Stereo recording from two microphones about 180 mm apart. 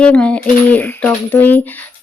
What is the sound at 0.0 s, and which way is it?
Speech, 5° left (ahead or behind).